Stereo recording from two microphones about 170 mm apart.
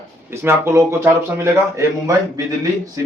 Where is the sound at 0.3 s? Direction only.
15° right (ahead or behind).